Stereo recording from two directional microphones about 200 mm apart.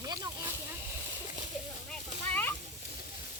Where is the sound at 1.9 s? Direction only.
10° left (ahead or behind).